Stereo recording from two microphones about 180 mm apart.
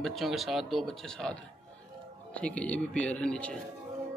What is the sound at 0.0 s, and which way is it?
A man's voice, centre (ahead or behind).